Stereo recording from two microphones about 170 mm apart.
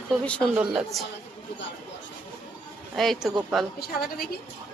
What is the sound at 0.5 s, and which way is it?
Speech, centre (ahead or behind).